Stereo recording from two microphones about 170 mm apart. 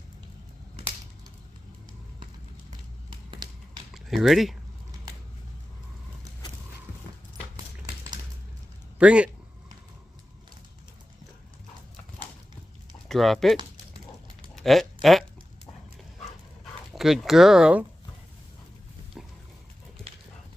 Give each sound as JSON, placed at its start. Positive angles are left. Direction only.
{"t": 3.1, "sound": "a sound", "side_deg": -30}
{"t": 3.9, "sound": "speech", "side_deg": 0}
{"t": 8.9, "sound": "speech", "side_deg": -5}
{"t": 13.1, "sound": "speech", "side_deg": 0}
{"t": 14.5, "sound": "a sound", "side_deg": 0}
{"t": 16.9, "sound": "speech", "side_deg": 0}